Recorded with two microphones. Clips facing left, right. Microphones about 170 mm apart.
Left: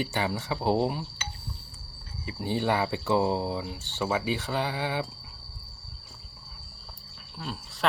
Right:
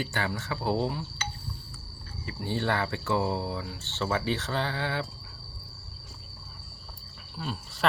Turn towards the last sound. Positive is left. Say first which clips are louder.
# right 1 dB
turn(degrees=0)  # may be behind; listen again after turning